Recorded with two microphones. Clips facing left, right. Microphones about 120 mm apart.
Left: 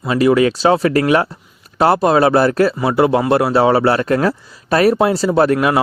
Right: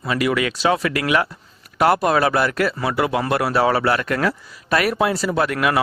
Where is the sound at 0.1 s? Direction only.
30° left (ahead or behind).